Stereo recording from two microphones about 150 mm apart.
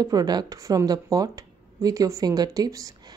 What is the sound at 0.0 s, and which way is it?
Speech, 25° right (ahead or behind).